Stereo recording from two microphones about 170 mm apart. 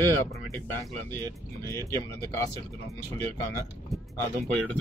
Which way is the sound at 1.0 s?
15° left (ahead or behind).